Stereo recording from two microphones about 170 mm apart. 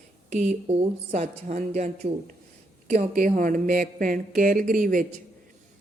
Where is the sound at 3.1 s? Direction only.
55° right (ahead or behind).